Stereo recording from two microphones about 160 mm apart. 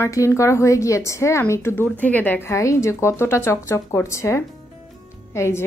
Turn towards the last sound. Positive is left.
turn(degrees=15)  # may be behind; listen again after turning